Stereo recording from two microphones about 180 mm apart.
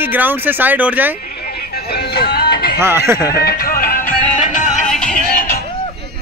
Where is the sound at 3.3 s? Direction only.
60° left (ahead or behind).